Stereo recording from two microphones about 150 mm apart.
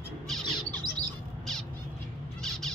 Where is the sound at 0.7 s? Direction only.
30° right (ahead or behind).